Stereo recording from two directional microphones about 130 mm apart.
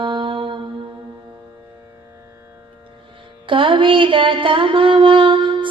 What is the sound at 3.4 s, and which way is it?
Mantra, 40° right (ahead or behind).